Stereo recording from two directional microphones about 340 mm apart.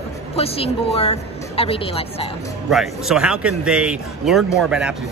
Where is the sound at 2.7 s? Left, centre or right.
Centre.